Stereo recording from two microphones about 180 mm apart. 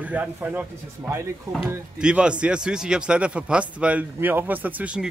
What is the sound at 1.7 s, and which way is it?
Speech, 10° right (ahead or behind).